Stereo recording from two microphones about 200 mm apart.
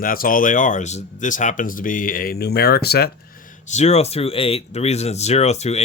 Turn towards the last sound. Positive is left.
turn(degrees=35)  # may be behind; listen again after turning